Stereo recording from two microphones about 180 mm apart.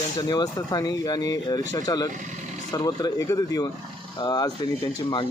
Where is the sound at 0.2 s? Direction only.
20° left (ahead or behind).